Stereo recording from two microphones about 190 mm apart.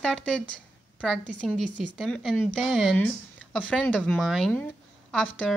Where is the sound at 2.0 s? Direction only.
Centre (ahead or behind).